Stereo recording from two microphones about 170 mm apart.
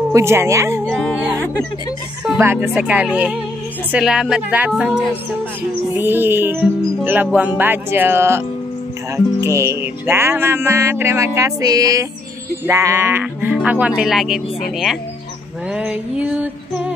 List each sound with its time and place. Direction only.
0.1 s speech: 15° right (ahead or behind)
0.8 s speech: 5° left (ahead or behind)
2.2 s speech: 15° right (ahead or behind)
15.7 s a sound: 5° right (ahead or behind)